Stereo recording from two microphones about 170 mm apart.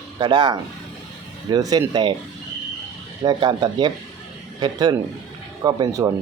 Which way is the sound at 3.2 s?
30° right (ahead or behind).